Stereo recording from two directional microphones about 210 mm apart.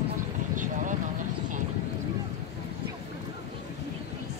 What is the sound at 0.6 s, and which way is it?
Vehicle, 40° right (ahead or behind).